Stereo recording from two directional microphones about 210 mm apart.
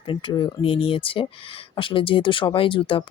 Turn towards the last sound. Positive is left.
turn(degrees=25)  # may be behind; listen again after turning